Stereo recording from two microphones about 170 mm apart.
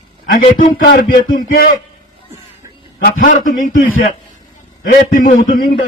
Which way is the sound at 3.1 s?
50° left (ahead or behind).